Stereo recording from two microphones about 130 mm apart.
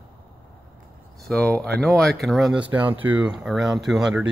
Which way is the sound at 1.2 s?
5° left (ahead or behind).